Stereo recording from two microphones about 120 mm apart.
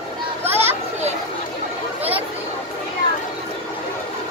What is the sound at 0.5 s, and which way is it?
Children playing, 20° right (ahead or behind).